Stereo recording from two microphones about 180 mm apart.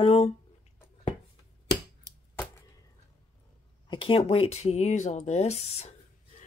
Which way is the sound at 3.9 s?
30° left (ahead or behind).